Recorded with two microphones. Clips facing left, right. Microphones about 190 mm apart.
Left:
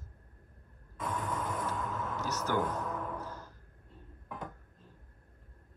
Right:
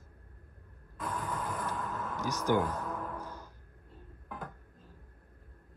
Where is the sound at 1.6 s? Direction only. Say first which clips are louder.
Left 1 dB; centre (ahead or behind).